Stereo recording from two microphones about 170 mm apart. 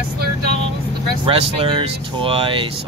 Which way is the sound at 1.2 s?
35° right (ahead or behind).